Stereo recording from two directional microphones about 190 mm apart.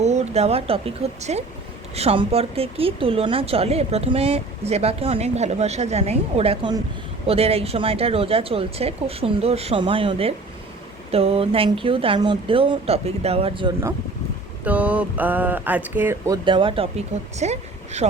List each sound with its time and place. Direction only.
0.0 s a woman's voice: 35° right (ahead or behind)
14.6 s speech: 5° right (ahead or behind); by 18.1 s 35° right (ahead or behind)